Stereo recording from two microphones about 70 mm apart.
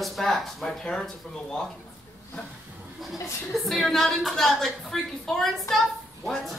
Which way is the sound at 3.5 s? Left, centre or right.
Centre.